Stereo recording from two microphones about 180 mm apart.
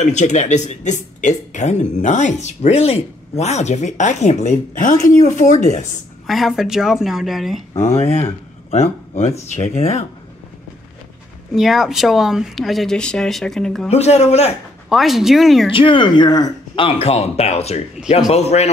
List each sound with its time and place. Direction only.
0.0 s speech: 40° left (ahead or behind)
6.2 s speech: centre (ahead or behind)
7.7 s speech: 15° left (ahead or behind)
8.6 s speech: 40° left (ahead or behind)
11.5 s speech: centre (ahead or behind)
13.8 s speech: 35° left (ahead or behind)
14.9 s speech: centre (ahead or behind)
15.7 s speech: 30° left (ahead or behind)